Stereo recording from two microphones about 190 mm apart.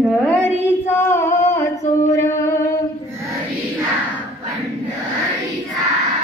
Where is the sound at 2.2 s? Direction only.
15° left (ahead or behind).